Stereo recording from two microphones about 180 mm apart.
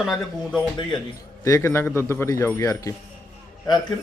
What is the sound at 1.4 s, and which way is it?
A man's voice, 15° left (ahead or behind).